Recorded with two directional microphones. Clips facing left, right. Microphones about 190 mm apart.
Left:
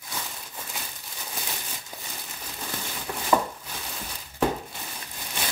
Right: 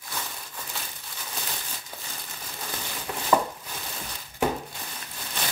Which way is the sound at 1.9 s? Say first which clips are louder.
Even; 15° left (ahead or behind).